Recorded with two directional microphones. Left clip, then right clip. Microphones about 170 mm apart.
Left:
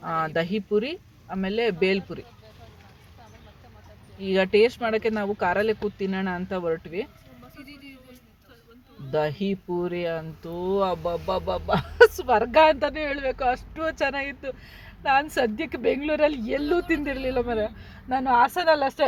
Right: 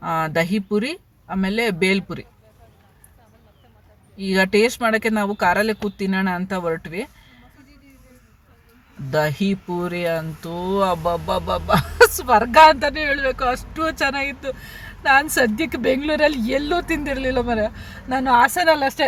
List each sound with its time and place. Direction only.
0.0 s speech: 10° left (ahead or behind)
4.2 s speech: 10° left (ahead or behind)
9.0 s speech: 10° left (ahead or behind)